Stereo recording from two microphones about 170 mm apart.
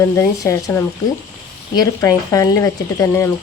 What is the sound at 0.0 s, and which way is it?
Speech, 15° left (ahead or behind).